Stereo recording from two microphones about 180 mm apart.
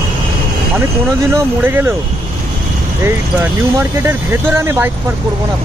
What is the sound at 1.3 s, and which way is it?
Speech, 10° right (ahead or behind).